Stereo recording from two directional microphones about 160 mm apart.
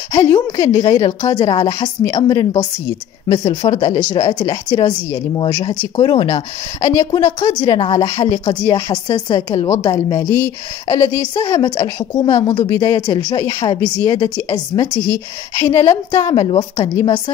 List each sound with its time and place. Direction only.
0.1 s speech: 20° left (ahead or behind)